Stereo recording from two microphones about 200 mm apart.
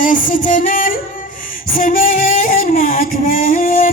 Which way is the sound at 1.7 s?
45° left (ahead or behind).